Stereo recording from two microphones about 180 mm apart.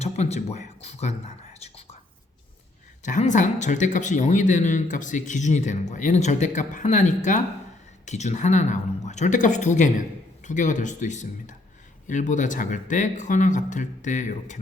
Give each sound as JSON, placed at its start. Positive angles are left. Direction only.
{"t": 0.0, "sound": "speech", "side_deg": 40}
{"t": 1.5, "sound": "whispering", "side_deg": 35}
{"t": 3.0, "sound": "speech", "side_deg": 40}